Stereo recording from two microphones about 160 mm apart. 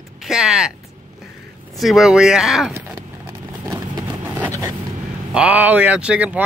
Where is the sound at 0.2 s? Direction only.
5° right (ahead or behind).